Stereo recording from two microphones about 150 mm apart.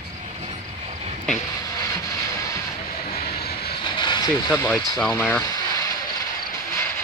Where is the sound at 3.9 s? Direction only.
30° left (ahead or behind).